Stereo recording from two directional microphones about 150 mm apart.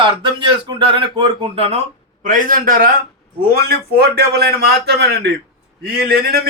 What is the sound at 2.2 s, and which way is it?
Speech, 60° right (ahead or behind).